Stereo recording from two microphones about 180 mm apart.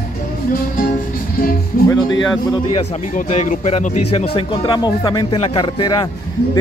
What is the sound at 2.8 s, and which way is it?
A man's voice, 40° left (ahead or behind).